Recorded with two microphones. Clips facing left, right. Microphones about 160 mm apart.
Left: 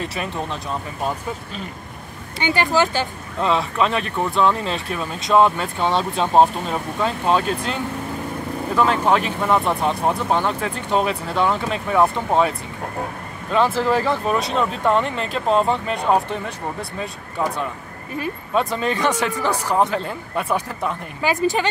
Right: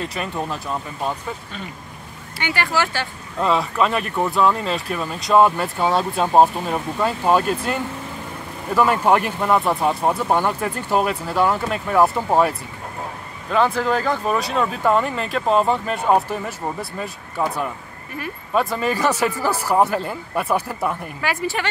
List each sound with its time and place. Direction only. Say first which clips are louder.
0.0 s speech: even; centre (ahead or behind)
2.3 s speech: left 4 dB; 20° left (ahead or behind)
3.3 s speech: right 1 dB; centre (ahead or behind)
21.2 s speech: left 6 dB; 20° left (ahead or behind)